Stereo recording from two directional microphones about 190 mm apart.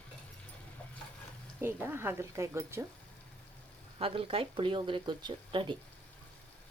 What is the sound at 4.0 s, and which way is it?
Speech, 30° right (ahead or behind).